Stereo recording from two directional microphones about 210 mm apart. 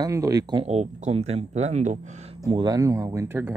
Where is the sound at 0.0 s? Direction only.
15° right (ahead or behind); by 2.3 s 35° right (ahead or behind).